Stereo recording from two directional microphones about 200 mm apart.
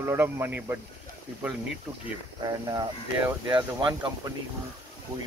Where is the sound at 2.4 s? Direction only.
20° right (ahead or behind).